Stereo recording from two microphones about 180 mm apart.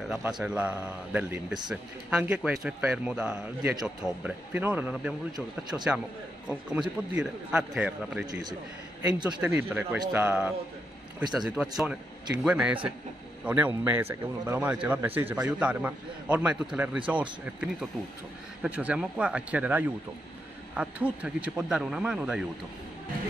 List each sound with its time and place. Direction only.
0.2 s a man's voice: 5° right (ahead or behind)
8.3 s a man's voice: 20° right (ahead or behind)
9.2 s a man's voice: 10° right (ahead or behind)